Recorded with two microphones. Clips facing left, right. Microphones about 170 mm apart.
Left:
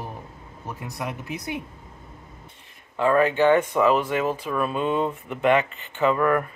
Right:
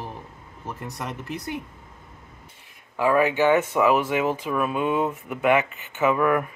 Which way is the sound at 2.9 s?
10° right (ahead or behind).